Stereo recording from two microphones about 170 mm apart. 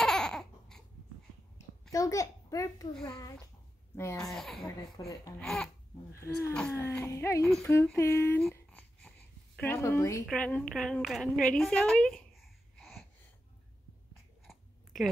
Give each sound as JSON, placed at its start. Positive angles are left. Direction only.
{"t": 0.0, "sound": "a sound", "side_deg": 5}
{"t": 1.9, "sound": "a child's voice", "side_deg": 20}
{"t": 4.2, "sound": "a child's voice", "side_deg": 0}
{"t": 5.0, "sound": "a child's voice", "side_deg": 20}
{"t": 5.4, "sound": "a child's voice", "side_deg": 0}
{"t": 6.1, "sound": "speech", "side_deg": 15}
{"t": 8.5, "sound": "babbling", "side_deg": 10}
{"t": 9.6, "sound": "a woman's voice", "side_deg": 10}
{"t": 14.5, "sound": "a sound", "side_deg": 0}